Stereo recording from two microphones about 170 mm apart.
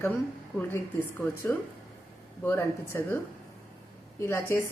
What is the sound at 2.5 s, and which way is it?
Speech, 10° left (ahead or behind).